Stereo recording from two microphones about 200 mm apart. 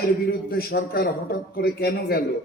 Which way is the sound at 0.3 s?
50° left (ahead or behind).